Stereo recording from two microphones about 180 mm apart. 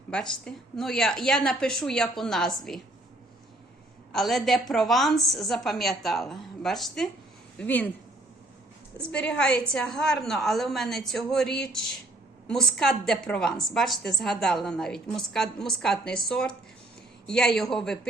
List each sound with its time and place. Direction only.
0.1 s a woman's voice: 5° left (ahead or behind)
4.1 s a woman's voice: centre (ahead or behind)
9.0 s a woman's voice: 5° left (ahead or behind)